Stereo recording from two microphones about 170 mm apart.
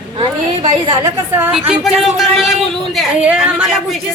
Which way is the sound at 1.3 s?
10° right (ahead or behind).